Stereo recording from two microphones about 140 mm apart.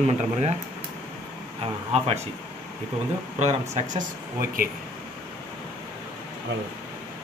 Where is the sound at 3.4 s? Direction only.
55° right (ahead or behind).